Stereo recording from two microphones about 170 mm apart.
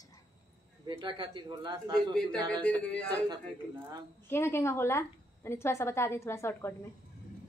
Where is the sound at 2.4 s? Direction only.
5° left (ahead or behind).